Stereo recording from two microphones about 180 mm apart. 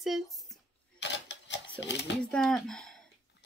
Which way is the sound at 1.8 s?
75° left (ahead or behind).